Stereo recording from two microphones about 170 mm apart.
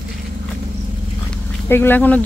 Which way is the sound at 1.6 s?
15° left (ahead or behind).